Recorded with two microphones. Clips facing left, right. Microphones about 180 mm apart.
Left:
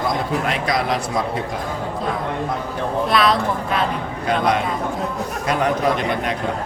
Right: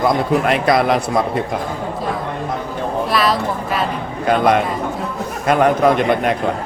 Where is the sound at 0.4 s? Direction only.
60° right (ahead or behind).